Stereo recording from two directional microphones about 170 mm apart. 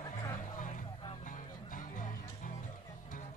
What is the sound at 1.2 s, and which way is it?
Music, 50° left (ahead or behind).